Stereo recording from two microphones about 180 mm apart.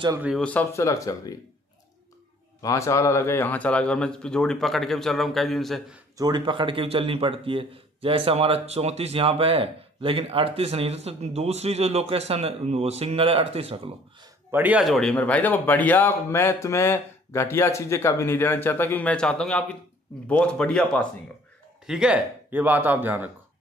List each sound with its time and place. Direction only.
0.4 s speech: 10° left (ahead or behind)
2.6 s speech: 15° left (ahead or behind); by 5.9 s centre (ahead or behind)
6.1 s speech: 25° right (ahead or behind)
14.5 s speech: 10° right (ahead or behind); by 21.1 s 5° left (ahead or behind)
21.8 s speech: 5° right (ahead or behind)